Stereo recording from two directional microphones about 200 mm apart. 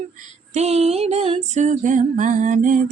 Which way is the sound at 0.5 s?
30° right (ahead or behind).